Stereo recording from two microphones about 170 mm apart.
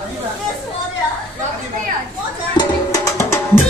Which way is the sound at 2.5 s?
20° left (ahead or behind).